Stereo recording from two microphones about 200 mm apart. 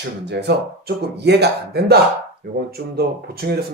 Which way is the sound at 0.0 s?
60° right (ahead or behind).